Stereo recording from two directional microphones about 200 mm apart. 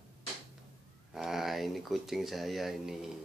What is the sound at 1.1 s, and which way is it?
Speech, centre (ahead or behind).